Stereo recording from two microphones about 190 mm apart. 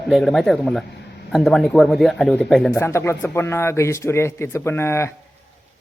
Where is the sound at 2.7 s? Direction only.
15° left (ahead or behind).